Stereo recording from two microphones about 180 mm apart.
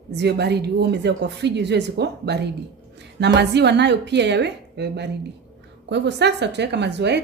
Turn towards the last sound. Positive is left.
turn(degrees=-70)  # may be behind; listen again after turning